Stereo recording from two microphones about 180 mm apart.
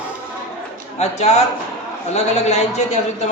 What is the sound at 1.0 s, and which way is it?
A man's voice, 40° left (ahead or behind).